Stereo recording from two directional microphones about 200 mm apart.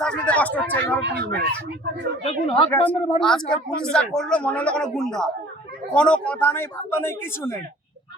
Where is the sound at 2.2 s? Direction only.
30° left (ahead or behind).